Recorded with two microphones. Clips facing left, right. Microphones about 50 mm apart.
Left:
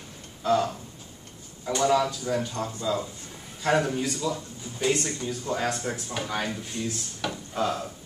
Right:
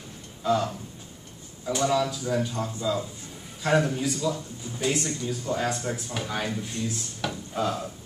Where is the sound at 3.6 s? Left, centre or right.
Centre.